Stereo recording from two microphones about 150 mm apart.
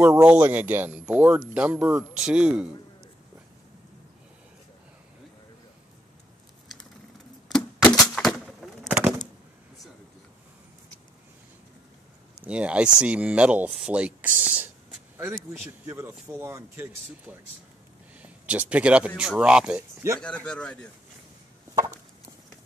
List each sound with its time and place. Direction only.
0.0 s speech: 10° right (ahead or behind)
7.4 s music: 5° left (ahead or behind)
8.1 s a sound: centre (ahead or behind)
12.4 s speech: 10° right (ahead or behind)
20.2 s speech: 5° left (ahead or behind)
21.7 s a sound: 20° right (ahead or behind)